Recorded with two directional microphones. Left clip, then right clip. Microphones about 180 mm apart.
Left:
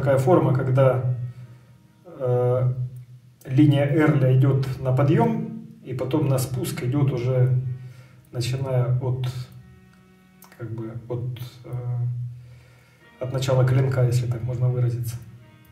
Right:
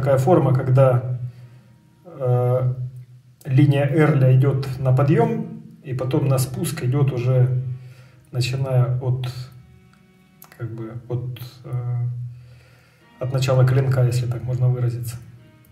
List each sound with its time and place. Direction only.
0.0 s speech: 15° right (ahead or behind)
2.1 s a sound: 15° right (ahead or behind)
3.4 s a man's voice: 20° right (ahead or behind)
10.6 s a man's voice: 15° right (ahead or behind)
13.2 s a man's voice: 20° right (ahead or behind)